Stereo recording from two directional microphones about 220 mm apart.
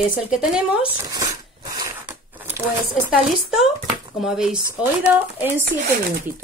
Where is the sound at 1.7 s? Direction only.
10° right (ahead or behind).